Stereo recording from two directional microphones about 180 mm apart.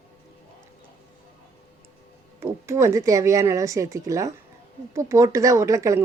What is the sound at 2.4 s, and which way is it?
Speech, 15° right (ahead or behind).